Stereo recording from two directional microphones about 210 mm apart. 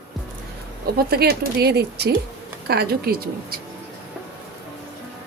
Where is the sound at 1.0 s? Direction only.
50° right (ahead or behind).